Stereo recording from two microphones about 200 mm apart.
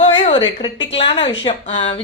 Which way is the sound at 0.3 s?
25° left (ahead or behind).